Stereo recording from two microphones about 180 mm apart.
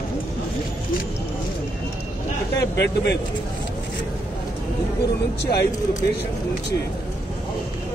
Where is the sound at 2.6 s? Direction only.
70° left (ahead or behind).